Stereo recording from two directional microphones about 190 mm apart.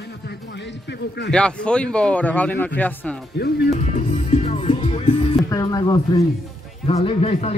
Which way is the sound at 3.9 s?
35° left (ahead or behind).